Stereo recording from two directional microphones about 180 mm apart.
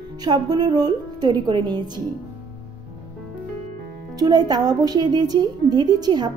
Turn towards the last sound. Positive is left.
turn(degrees=-20)  # may be behind; listen again after turning